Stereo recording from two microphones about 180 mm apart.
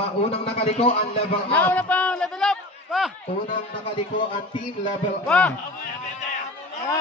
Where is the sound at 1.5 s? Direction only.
10° left (ahead or behind).